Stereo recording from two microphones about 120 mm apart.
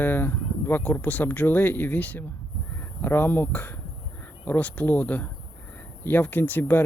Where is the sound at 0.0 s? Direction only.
15° left (ahead or behind).